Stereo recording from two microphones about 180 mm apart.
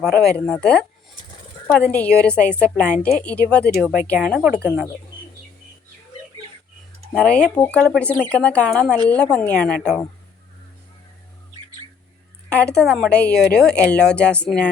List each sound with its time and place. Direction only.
0.2 s speech: 5° left (ahead or behind)
7.1 s speech: 5° left (ahead or behind)
12.5 s speech: 5° left (ahead or behind)